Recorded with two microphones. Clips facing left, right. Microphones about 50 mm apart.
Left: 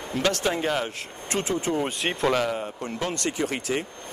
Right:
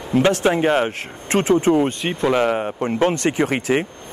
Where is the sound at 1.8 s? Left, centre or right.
Centre.